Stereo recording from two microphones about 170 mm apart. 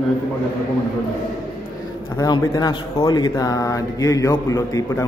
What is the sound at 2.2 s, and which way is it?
Speech, 20° left (ahead or behind).